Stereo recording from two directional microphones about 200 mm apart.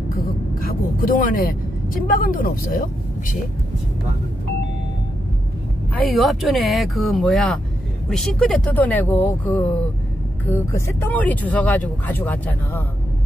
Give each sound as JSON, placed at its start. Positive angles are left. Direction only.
{"t": 0.6, "sound": "speech", "side_deg": 45}
{"t": 6.0, "sound": "speech", "side_deg": 0}